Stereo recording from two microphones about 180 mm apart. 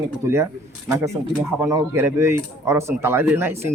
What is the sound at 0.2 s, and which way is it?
Speech, 15° right (ahead or behind).